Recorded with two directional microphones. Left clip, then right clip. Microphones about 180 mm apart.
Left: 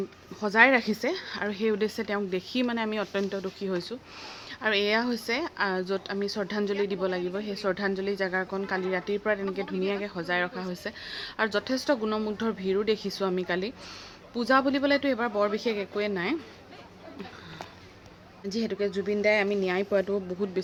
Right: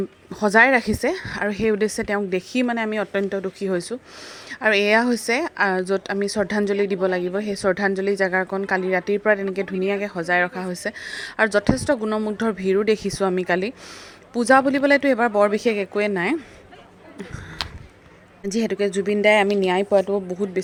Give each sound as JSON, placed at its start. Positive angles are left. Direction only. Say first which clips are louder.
{"t": 0.3, "sound": "speech", "louder": "right 5 dB", "side_deg": -50}
{"t": 18.4, "sound": "speech", "louder": "right 7 dB", "side_deg": -55}
{"t": 19.9, "sound": "a woman's voice", "louder": "right 8 dB", "side_deg": -20}